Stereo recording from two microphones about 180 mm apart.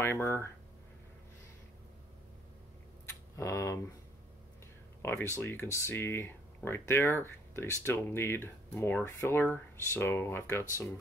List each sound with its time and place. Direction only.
0.0 s speech: 10° left (ahead or behind)
3.3 s speech: 15° left (ahead or behind)
5.0 s speech: 15° left (ahead or behind)